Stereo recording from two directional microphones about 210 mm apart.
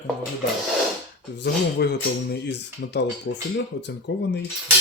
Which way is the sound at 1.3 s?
55° left (ahead or behind).